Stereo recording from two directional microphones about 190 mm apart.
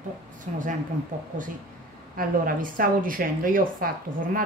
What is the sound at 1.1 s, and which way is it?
A woman's voice, 45° right (ahead or behind).